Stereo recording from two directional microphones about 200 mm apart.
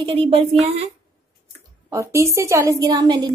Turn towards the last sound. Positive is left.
turn(degrees=-20)  # may be behind; listen again after turning